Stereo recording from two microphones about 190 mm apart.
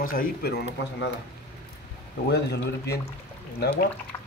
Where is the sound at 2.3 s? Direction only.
60° left (ahead or behind).